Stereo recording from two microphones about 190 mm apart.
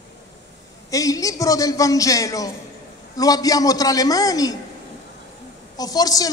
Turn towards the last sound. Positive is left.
turn(degrees=20)  # may be behind; listen again after turning